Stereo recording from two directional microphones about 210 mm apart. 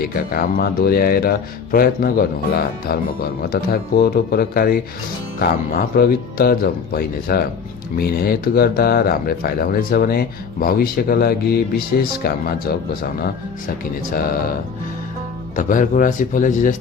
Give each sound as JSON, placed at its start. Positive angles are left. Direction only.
{"t": 0.0, "sound": "speech", "side_deg": 45}
{"t": 15.5, "sound": "speech", "side_deg": 40}